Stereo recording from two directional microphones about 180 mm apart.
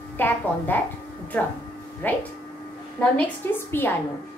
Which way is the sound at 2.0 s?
10° left (ahead or behind).